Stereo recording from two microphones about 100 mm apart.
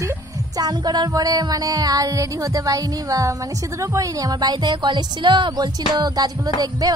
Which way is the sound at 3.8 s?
35° right (ahead or behind).